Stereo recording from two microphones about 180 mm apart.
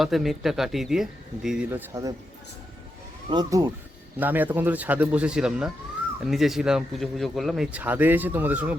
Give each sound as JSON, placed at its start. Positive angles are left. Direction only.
{"t": 0.0, "sound": "speech", "side_deg": 0}
{"t": 3.2, "sound": "speech", "side_deg": -25}
{"t": 4.2, "sound": "speech", "side_deg": -10}